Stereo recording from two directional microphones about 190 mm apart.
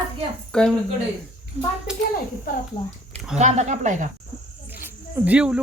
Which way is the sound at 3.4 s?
35° right (ahead or behind).